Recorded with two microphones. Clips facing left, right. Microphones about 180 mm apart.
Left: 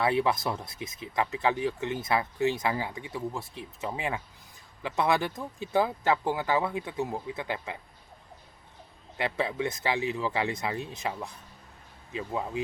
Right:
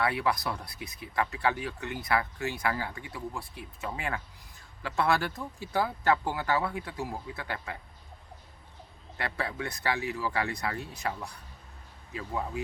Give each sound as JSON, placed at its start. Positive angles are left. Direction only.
{"t": 0.0, "sound": "speech", "side_deg": 25}
{"t": 9.1, "sound": "speech", "side_deg": 15}